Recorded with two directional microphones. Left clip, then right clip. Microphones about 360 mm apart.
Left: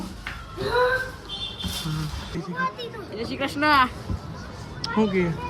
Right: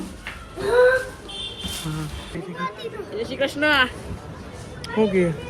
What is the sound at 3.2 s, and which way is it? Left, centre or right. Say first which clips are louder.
Speech: right 4 dB; centre.